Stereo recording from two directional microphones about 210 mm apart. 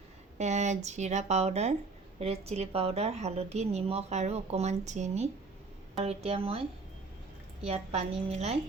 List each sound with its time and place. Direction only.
0.3 s a woman's voice: 35° right (ahead or behind)
7.6 s a woman's voice: 30° right (ahead or behind)